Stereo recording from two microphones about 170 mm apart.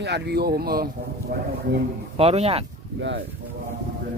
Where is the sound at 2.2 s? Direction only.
35° right (ahead or behind).